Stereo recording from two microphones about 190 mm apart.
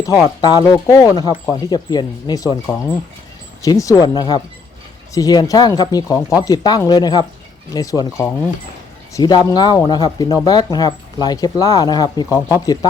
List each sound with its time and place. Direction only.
0.0 s speech: 20° left (ahead or behind)
3.6 s speech: 15° left (ahead or behind)